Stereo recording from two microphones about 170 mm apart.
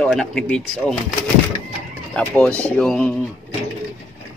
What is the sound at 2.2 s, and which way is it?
Speech, 5° left (ahead or behind).